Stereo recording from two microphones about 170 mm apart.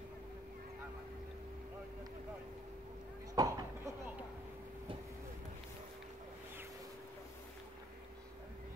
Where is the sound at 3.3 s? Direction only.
20° right (ahead or behind).